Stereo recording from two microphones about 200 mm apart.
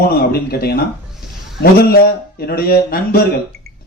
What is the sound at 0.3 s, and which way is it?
Speech, 50° left (ahead or behind).